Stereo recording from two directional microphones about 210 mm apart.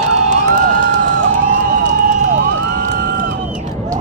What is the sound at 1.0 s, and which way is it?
Emergency vehicle, 40° right (ahead or behind).